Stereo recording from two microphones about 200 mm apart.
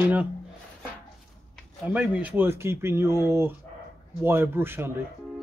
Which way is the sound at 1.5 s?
5° right (ahead or behind).